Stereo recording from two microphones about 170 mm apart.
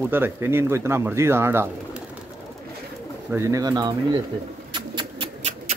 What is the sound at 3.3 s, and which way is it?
Speech, 20° right (ahead or behind).